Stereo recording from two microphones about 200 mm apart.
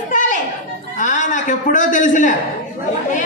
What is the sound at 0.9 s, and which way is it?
A man's voice, 40° left (ahead or behind).